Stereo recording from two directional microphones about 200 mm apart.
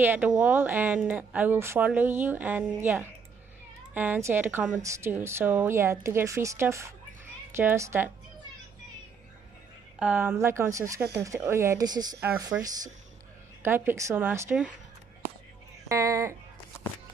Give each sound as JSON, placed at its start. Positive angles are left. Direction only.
{"t": 0.0, "sound": "speech", "side_deg": -10}
{"t": 9.9, "sound": "speech", "side_deg": -10}
{"t": 13.6, "sound": "speech", "side_deg": -10}
{"t": 15.9, "sound": "speech", "side_deg": -15}